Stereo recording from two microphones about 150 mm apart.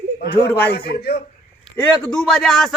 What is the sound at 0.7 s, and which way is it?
Speech, 90° left.